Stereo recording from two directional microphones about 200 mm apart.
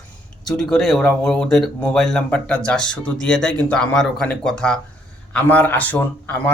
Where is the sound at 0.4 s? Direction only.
5° left (ahead or behind).